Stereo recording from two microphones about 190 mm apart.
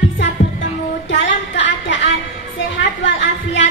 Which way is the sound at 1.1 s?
75° left (ahead or behind).